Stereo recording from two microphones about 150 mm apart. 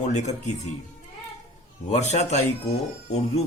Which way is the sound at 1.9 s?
50° left (ahead or behind).